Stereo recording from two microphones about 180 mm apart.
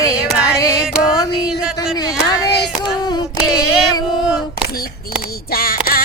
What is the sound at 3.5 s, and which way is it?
Child singing, 5° right (ahead or behind).